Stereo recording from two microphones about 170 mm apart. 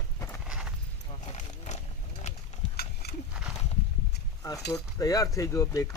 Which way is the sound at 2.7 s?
70° left (ahead or behind).